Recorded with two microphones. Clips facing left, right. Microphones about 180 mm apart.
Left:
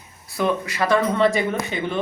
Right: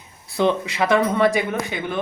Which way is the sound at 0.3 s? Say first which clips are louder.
Right 2 dB; 20° right (ahead or behind).